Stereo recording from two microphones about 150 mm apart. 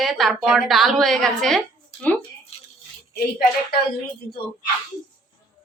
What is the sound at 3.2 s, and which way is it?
Speech, 90° left.